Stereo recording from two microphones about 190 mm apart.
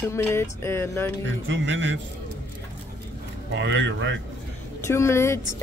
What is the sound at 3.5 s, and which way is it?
Speech, 70° right (ahead or behind).